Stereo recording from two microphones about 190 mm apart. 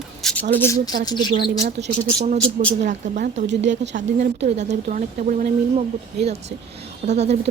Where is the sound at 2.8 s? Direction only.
45° right (ahead or behind).